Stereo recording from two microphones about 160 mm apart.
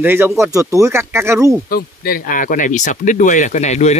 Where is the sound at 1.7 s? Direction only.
65° left (ahead or behind).